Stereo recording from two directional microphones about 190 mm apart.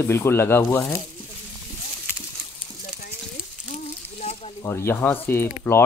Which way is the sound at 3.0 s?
45° left (ahead or behind).